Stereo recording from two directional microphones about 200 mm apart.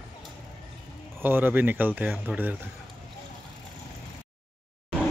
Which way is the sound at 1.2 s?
10° right (ahead or behind).